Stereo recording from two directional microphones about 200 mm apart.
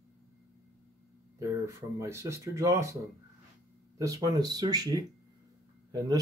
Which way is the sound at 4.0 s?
15° right (ahead or behind).